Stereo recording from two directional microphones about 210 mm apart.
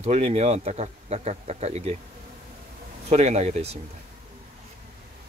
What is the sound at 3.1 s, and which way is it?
Speech, 30° right (ahead or behind).